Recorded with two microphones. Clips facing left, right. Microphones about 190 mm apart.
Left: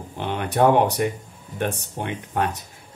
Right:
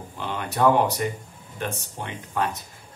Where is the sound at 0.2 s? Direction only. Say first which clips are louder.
Left 3 dB; 55° left (ahead or behind).